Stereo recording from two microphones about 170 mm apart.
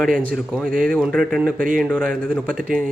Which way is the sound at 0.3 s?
5° left (ahead or behind).